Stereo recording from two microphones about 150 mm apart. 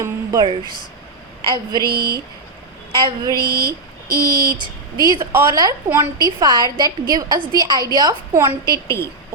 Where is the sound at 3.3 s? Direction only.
90° right.